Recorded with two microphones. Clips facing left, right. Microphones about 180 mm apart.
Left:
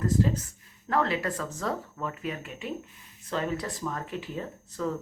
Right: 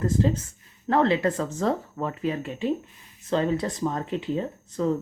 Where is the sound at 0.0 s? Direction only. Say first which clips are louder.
Right 2 dB; 25° right (ahead or behind).